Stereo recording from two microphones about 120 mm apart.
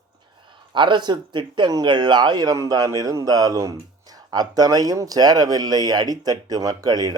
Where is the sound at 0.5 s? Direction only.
40° right (ahead or behind).